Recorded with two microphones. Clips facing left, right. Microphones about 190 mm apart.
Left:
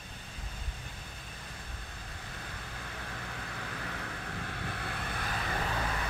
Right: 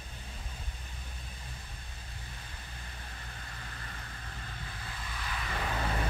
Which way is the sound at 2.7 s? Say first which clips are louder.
Left 8 dB; 70° left (ahead or behind).